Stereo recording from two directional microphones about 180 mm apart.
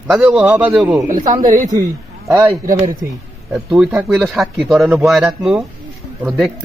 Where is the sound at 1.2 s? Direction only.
20° right (ahead or behind).